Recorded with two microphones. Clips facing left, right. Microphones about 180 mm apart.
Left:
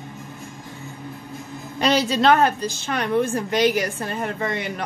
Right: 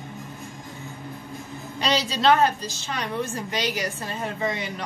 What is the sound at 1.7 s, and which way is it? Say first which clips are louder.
A woman's voice: left 6 dB; 55° left (ahead or behind).